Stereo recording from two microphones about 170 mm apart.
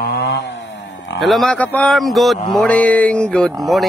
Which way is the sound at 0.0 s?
80° left.